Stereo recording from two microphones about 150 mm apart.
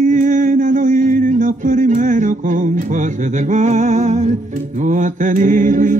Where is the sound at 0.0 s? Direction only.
60° right (ahead or behind).